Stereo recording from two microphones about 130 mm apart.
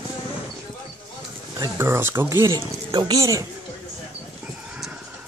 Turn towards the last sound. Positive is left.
turn(degrees=-25)  # may be behind; listen again after turning